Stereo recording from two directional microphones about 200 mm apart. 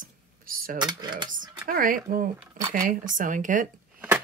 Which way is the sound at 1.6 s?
45° right (ahead or behind).